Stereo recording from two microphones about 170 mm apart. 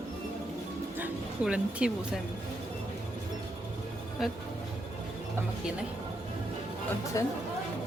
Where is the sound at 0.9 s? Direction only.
5° right (ahead or behind).